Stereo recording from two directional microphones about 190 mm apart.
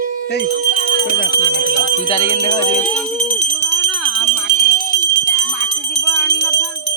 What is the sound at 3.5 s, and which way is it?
Jingle bell, 15° left (ahead or behind).